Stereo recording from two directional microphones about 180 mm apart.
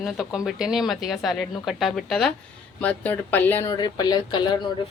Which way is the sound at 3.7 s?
25° left (ahead or behind).